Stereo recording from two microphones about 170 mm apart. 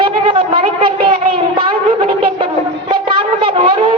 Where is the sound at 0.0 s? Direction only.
30° right (ahead or behind).